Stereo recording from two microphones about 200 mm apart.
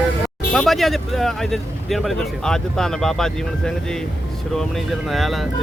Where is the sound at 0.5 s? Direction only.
Centre (ahead or behind).